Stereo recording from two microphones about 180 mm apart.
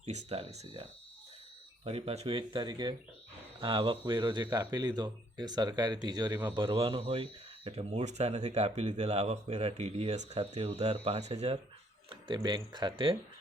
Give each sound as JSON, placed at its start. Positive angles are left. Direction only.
{"t": 0.3, "sound": "speech", "side_deg": -35}
{"t": 12.0, "sound": "speech", "side_deg": -25}